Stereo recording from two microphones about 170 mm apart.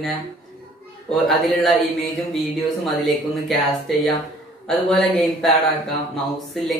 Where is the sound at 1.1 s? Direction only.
Centre (ahead or behind).